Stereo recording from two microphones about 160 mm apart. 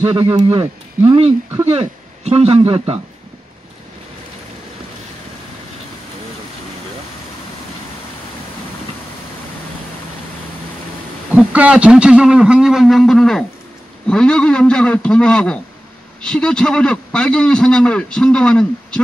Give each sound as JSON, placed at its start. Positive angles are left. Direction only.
{"t": 0.0, "sound": "a man's voice", "side_deg": -30}
{"t": 11.3, "sound": "a man's voice", "side_deg": -10}